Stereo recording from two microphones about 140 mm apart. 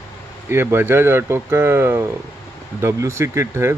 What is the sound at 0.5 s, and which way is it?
Speech, 15° right (ahead or behind).